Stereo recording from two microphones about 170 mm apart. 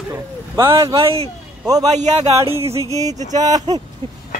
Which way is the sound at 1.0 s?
35° right (ahead or behind).